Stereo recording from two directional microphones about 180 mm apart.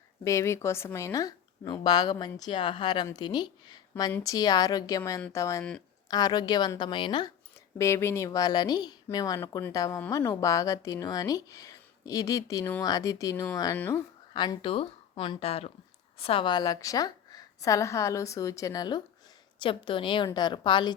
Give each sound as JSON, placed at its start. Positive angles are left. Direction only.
{"t": 0.3, "sound": "speech", "side_deg": 15}
{"t": 7.8, "sound": "speech", "side_deg": 15}
{"t": 14.3, "sound": "speech", "side_deg": 25}